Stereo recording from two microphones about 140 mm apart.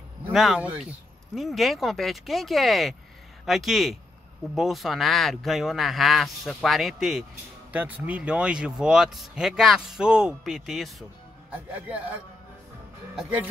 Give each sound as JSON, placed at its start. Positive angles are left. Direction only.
{"t": 0.3, "sound": "a man's voice", "side_deg": 0}